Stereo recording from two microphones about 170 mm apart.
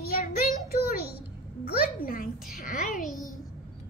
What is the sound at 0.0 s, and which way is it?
Child singing, 60° left (ahead or behind).